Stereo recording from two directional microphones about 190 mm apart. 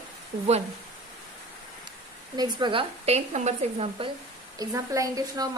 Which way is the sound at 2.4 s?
25° right (ahead or behind).